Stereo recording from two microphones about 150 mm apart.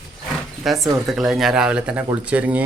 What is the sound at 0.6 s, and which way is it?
Speech, centre (ahead or behind).